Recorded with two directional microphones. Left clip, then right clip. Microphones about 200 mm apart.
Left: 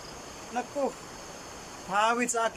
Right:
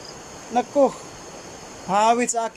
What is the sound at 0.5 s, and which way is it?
Speech, 25° right (ahead or behind).